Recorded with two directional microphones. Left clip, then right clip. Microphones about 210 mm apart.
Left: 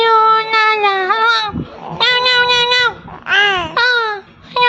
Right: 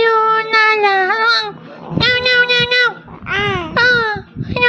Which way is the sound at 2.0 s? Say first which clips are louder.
Left 1 dB; 15° right (ahead or behind).